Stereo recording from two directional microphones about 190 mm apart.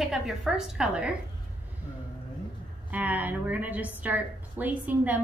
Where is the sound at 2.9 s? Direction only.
10° right (ahead or behind).